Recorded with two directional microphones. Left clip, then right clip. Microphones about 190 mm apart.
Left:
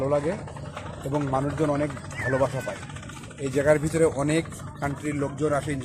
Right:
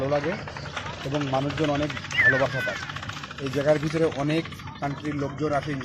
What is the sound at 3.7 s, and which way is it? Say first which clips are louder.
Speech: left 1 dB; 20° left (ahead or behind).